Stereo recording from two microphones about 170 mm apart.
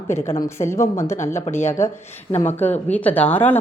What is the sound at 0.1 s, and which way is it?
A woman's voice, 15° left (ahead or behind).